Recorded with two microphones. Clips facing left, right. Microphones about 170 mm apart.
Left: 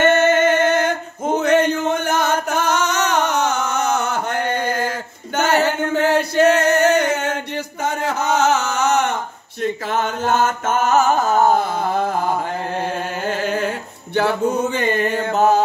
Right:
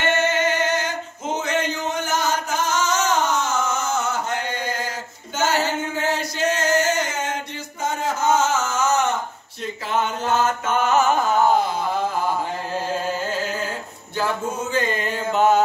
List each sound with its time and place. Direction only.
0.0 s male singing: 50° left (ahead or behind)
9.6 s music: 60° left (ahead or behind)
14.1 s a sound: 65° left (ahead or behind)
15.3 s mantra: 40° left (ahead or behind)